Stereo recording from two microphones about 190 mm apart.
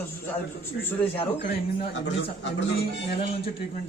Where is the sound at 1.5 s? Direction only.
55° left (ahead or behind).